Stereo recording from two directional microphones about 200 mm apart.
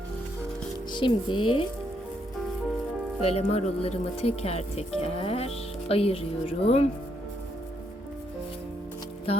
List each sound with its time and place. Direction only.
0.9 s speech: 25° left (ahead or behind)
3.2 s speech: 30° left (ahead or behind)